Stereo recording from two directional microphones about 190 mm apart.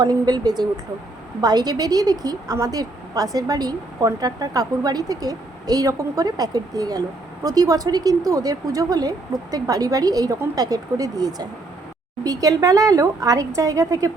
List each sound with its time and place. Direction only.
0.0 s speech: 20° right (ahead or behind)